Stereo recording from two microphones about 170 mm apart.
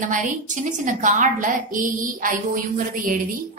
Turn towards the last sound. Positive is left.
turn(degrees=-50)  # may be behind; listen again after turning